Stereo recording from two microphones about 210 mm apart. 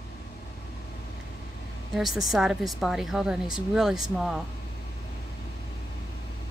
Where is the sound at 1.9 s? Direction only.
Centre (ahead or behind).